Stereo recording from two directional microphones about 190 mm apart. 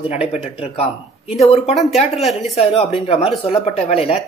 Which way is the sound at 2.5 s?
30° left (ahead or behind).